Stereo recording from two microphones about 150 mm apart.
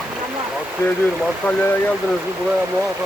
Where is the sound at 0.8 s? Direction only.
20° left (ahead or behind).